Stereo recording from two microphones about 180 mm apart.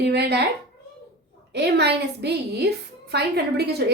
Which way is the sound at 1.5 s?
70° right (ahead or behind).